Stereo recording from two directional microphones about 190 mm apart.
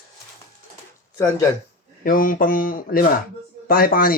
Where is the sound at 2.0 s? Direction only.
45° left (ahead or behind).